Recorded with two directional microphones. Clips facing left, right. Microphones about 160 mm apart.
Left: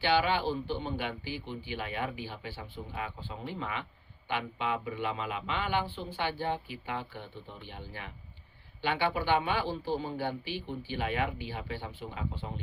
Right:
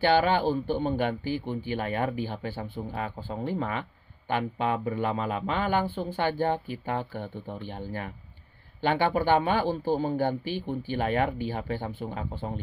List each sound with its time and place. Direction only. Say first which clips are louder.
0.0 s speech: right 5 dB; 45° right (ahead or behind)